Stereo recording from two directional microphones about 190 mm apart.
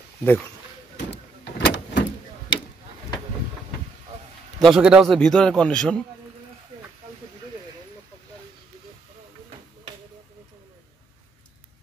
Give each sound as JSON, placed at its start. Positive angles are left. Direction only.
{"t": 0.2, "sound": "speech", "side_deg": 10}
{"t": 0.9, "sound": "vehicle", "side_deg": 70}
{"t": 4.6, "sound": "a man's voice", "side_deg": 0}